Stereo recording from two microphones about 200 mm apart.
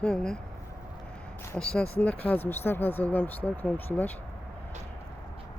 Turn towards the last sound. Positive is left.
turn(degrees=10)  # may be behind; listen again after turning